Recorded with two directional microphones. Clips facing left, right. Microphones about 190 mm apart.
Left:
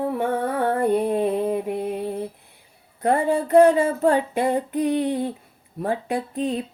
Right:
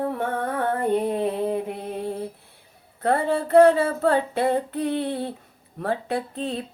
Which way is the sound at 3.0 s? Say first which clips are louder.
Left 2 dB; 15° left (ahead or behind).